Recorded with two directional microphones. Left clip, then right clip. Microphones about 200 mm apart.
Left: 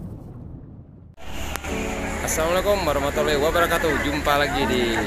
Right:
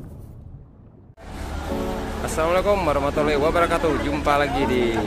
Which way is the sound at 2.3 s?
5° right (ahead or behind).